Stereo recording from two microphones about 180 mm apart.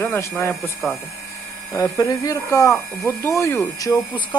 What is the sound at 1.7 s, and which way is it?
Speech, 20° left (ahead or behind).